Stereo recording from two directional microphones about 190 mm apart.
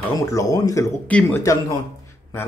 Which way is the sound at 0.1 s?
15° left (ahead or behind).